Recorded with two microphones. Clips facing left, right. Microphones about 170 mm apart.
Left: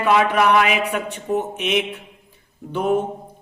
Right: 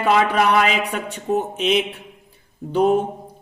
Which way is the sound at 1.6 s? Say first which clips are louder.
Right 2 dB; 30° right (ahead or behind).